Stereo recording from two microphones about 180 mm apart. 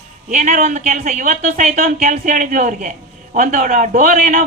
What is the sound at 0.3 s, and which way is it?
A man's voice, 45° right (ahead or behind).